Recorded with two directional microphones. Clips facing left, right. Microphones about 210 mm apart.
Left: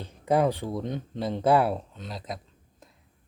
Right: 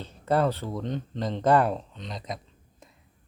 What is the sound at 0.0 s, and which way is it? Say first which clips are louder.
Speech: left 1 dB; 15° left (ahead or behind).